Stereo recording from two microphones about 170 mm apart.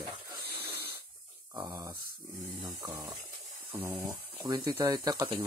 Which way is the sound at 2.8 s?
20° right (ahead or behind).